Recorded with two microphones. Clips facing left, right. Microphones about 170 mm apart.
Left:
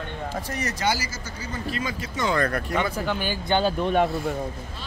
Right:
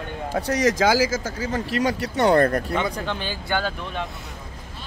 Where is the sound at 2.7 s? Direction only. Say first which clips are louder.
Even; 5° left (ahead or behind).